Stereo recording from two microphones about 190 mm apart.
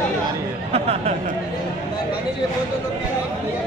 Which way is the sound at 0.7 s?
35° right (ahead or behind).